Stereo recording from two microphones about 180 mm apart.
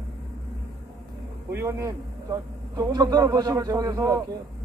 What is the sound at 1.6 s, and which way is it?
A man's voice, 15° right (ahead or behind).